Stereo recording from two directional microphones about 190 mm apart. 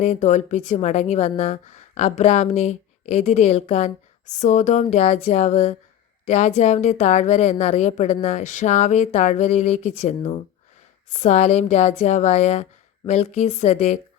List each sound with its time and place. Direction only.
0.0 s speech: 40° left (ahead or behind)